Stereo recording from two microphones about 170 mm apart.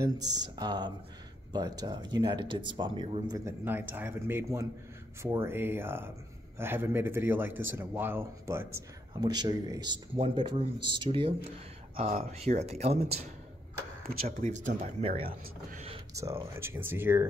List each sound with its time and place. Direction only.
0.6 s speech: 25° right (ahead or behind)
12.1 s speech: 45° right (ahead or behind)
14.0 s speech: 60° right (ahead or behind)
14.8 s speech: 40° right (ahead or behind)
16.2 s speech: 15° right (ahead or behind)